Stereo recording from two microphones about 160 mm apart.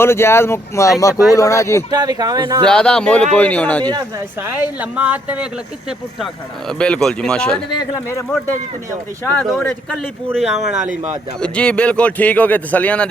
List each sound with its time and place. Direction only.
0.0 s speech: 15° left (ahead or behind)
1.9 s speech: 25° right (ahead or behind)
2.6 s speech: 5° left (ahead or behind)
4.6 s speech: 10° right (ahead or behind)
6.7 s speech: 5° left (ahead or behind)
10.8 s speech: 45° right (ahead or behind)
11.3 s speech: 5° left (ahead or behind)